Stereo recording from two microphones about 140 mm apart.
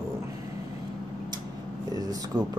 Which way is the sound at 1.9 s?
25° right (ahead or behind).